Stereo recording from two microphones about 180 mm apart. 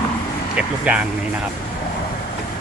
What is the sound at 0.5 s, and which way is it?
Speech, 5° right (ahead or behind).